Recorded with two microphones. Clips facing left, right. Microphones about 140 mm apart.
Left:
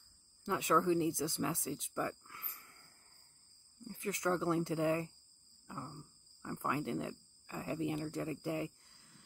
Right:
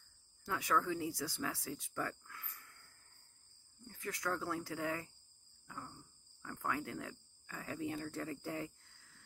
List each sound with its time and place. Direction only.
0.4 s speech: 20° left (ahead or behind)